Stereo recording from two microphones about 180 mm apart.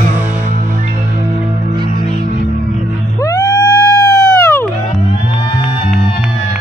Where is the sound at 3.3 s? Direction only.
20° left (ahead or behind).